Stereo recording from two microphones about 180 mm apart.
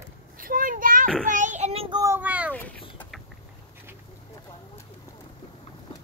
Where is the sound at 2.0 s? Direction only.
10° right (ahead or behind).